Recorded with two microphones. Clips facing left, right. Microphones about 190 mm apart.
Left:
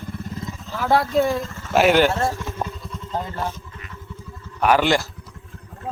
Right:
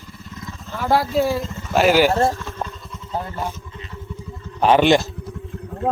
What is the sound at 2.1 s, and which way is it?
Mantra, 30° right (ahead or behind).